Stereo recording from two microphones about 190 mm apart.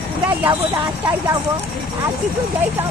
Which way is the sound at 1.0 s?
20° right (ahead or behind).